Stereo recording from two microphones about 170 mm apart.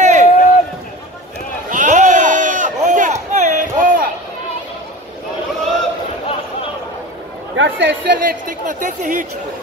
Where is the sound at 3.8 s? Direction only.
55° right (ahead or behind).